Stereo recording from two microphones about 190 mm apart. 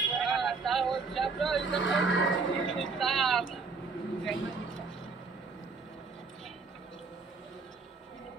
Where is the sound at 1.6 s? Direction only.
80° left.